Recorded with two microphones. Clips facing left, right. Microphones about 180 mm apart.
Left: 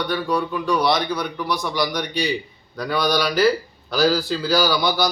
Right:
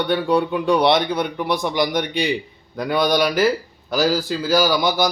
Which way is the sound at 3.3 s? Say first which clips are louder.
Even; 50° right (ahead or behind).